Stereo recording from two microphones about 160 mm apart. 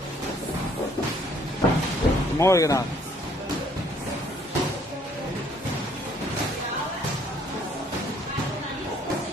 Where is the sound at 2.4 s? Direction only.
20° left (ahead or behind).